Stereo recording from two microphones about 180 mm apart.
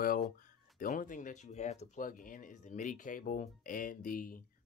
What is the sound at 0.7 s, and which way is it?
Speech, 50° left (ahead or behind).